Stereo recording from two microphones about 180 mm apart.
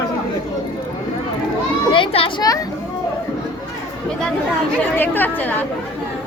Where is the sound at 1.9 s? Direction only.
30° left (ahead or behind).